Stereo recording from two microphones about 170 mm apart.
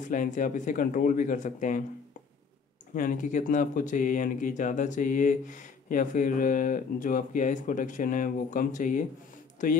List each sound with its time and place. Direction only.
0.0 s speech: 50° left (ahead or behind)
2.9 s speech: 50° left (ahead or behind)